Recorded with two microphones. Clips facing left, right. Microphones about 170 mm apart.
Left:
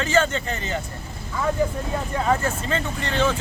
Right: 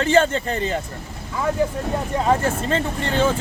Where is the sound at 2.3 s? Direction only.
30° right (ahead or behind).